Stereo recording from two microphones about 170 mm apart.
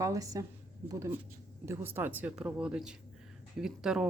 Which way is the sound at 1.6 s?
15° right (ahead or behind).